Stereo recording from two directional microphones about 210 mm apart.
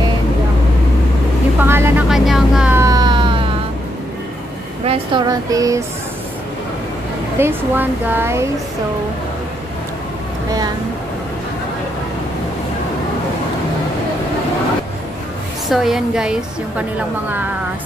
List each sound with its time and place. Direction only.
1.6 s music: 10° right (ahead or behind)
4.8 s speech: 25° right (ahead or behind)
7.3 s speech: 10° right (ahead or behind)
15.7 s a woman's voice: centre (ahead or behind)